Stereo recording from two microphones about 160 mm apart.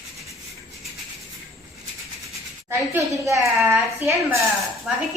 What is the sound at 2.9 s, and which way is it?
A woman's voice, 20° right (ahead or behind).